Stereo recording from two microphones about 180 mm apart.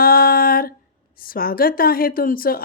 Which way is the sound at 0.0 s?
55° left (ahead or behind).